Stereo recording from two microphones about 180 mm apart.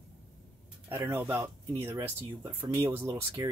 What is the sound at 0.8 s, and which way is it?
Speech, 10° right (ahead or behind).